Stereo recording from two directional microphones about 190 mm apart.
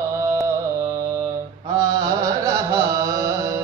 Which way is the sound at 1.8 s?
20° right (ahead or behind).